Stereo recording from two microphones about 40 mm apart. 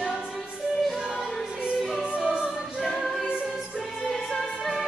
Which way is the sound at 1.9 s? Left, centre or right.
Centre.